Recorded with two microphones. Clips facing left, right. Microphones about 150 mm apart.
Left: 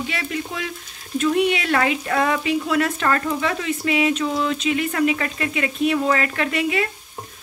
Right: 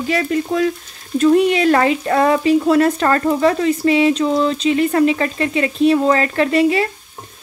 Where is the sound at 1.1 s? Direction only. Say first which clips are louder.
Right 7 dB; 35° right (ahead or behind).